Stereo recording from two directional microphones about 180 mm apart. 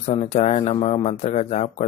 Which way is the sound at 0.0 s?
35° left (ahead or behind).